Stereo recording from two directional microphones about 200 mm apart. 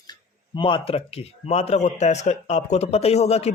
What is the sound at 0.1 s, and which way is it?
Speech, 25° left (ahead or behind).